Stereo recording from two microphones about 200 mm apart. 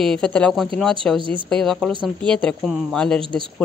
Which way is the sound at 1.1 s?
25° right (ahead or behind).